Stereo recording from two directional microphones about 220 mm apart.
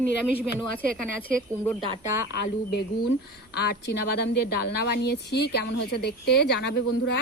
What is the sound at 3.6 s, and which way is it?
Speech, 45° left (ahead or behind).